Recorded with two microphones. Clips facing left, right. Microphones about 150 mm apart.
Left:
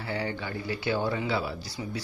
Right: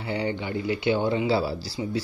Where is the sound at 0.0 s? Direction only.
20° right (ahead or behind).